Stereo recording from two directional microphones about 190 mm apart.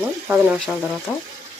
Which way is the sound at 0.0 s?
10° right (ahead or behind).